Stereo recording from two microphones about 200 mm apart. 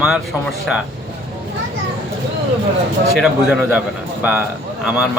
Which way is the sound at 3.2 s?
Centre (ahead or behind).